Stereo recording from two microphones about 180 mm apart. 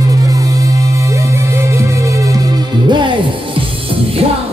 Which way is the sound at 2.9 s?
25° right (ahead or behind).